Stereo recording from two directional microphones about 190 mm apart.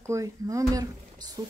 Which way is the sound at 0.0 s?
15° right (ahead or behind).